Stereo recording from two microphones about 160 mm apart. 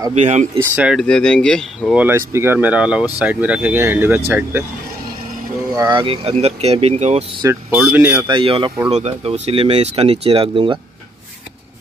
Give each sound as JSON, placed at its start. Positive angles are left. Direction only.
{"t": 0.1, "sound": "speech", "side_deg": -45}
{"t": 0.7, "sound": "speech", "side_deg": -5}
{"t": 1.0, "sound": "speech", "side_deg": 5}
{"t": 2.0, "sound": "speech", "side_deg": -15}
{"t": 5.8, "sound": "speech", "side_deg": -30}
{"t": 7.8, "sound": "speech", "side_deg": -10}
{"t": 8.3, "sound": "speech", "side_deg": -30}
{"t": 8.9, "sound": "speech", "side_deg": -40}